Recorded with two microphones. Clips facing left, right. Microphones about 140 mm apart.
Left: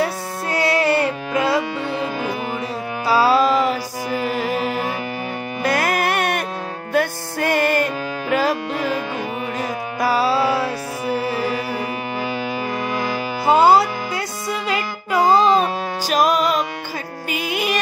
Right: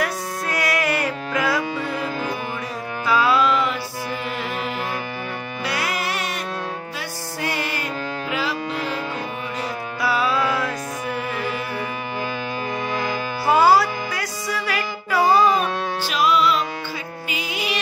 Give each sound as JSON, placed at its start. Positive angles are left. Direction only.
{"t": 0.0, "sound": "music", "side_deg": 30}
{"t": 3.1, "sound": "music", "side_deg": 35}
{"t": 13.5, "sound": "music", "side_deg": 25}
{"t": 16.1, "sound": "music", "side_deg": 45}